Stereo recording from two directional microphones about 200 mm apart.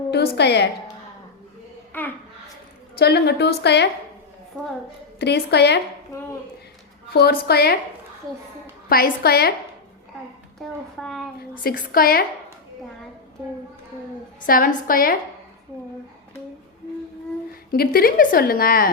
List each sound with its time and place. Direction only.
0.1 s a woman's voice: 55° left (ahead or behind)
1.9 s a child's voice: 10° left (ahead or behind)
3.0 s a woman's voice: 55° left (ahead or behind)
5.2 s a woman's voice: 55° left (ahead or behind)
7.4 s a woman's voice: 50° left (ahead or behind)
8.9 s a woman's voice: 50° left (ahead or behind)
10.6 s speech: centre (ahead or behind)
11.5 s a woman's voice: 45° left (ahead or behind)
14.4 s a woman's voice: 45° left (ahead or behind)
17.7 s a woman's voice: 50° left (ahead or behind)